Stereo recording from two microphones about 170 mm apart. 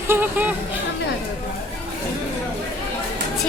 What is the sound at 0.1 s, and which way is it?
Speech, 10° right (ahead or behind).